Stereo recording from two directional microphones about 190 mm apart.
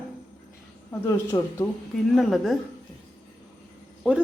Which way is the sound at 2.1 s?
Centre (ahead or behind).